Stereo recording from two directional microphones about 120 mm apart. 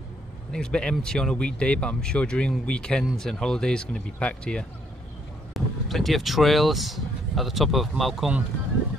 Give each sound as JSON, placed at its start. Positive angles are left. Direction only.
{"t": 0.5, "sound": "speech", "side_deg": 5}